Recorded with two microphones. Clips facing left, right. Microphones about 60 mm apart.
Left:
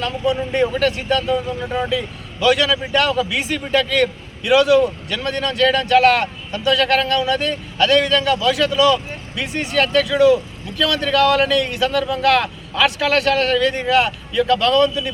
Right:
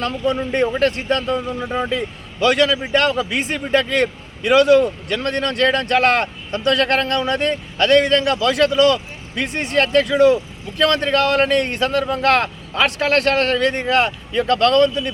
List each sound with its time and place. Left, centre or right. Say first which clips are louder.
0.0 s a man's voice: even; right